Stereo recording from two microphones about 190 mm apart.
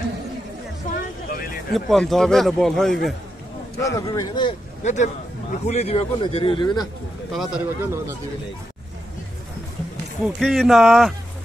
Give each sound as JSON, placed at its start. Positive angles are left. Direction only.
{"t": 0.9, "sound": "vehicle", "side_deg": 50}
{"t": 1.7, "sound": "a man's voice", "side_deg": 0}
{"t": 3.8, "sound": "a man's voice", "side_deg": 20}
{"t": 4.8, "sound": "a man's voice", "side_deg": 40}
{"t": 7.3, "sound": "a man's voice", "side_deg": -5}
{"t": 10.2, "sound": "a man's voice", "side_deg": 0}